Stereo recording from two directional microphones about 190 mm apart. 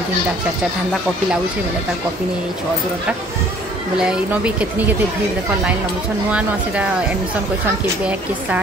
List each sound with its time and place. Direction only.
4.0 s speech: 5° right (ahead or behind)
8.0 s speech: 5° right (ahead or behind)